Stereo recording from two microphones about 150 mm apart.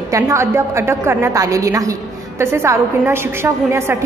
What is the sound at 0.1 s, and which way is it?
A woman's voice, 20° right (ahead or behind).